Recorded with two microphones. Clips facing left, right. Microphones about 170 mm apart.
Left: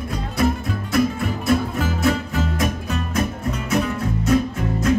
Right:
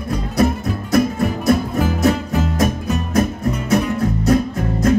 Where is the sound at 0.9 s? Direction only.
40° right (ahead or behind).